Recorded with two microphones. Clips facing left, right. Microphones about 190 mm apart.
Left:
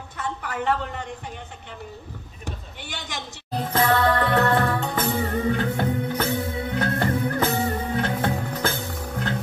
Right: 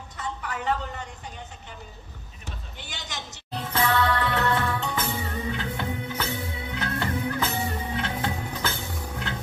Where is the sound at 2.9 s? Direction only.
50° left (ahead or behind).